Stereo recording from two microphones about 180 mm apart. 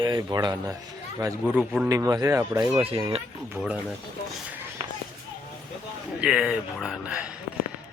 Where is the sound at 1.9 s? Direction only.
20° right (ahead or behind).